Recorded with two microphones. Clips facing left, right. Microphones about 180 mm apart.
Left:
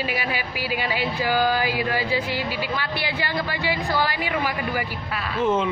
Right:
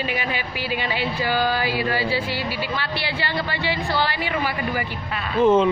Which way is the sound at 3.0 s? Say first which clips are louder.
Even; 15° left (ahead or behind).